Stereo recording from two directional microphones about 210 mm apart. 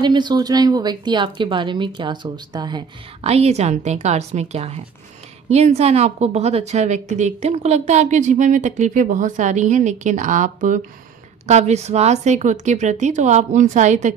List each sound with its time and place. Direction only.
0.0 s a woman's voice: 20° right (ahead or behind)